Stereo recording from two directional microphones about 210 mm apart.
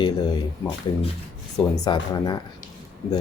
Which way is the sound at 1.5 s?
20° left (ahead or behind).